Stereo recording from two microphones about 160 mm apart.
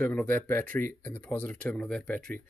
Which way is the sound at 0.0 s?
10° left (ahead or behind).